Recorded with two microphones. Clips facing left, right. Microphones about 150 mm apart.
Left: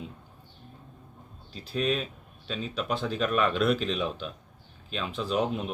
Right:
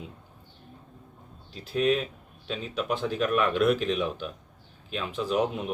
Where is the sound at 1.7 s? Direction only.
15° right (ahead or behind).